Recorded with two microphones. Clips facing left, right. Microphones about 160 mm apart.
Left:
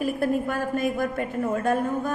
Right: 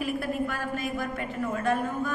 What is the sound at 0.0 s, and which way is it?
A woman's voice, 50° left (ahead or behind).